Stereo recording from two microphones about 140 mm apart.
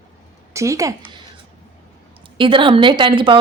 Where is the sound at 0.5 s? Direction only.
20° right (ahead or behind).